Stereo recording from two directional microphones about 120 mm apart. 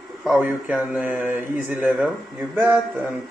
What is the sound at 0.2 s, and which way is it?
Speech, 5° right (ahead or behind).